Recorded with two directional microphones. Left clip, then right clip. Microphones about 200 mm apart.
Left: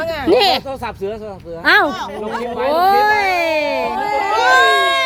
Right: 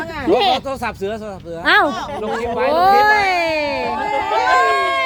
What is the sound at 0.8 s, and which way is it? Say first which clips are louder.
Speech: right 1 dB; 50° right (ahead or behind).